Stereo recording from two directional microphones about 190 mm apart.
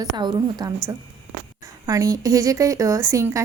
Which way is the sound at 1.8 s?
15° right (ahead or behind).